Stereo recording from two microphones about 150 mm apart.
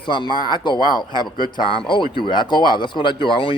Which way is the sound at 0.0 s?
30° left (ahead or behind).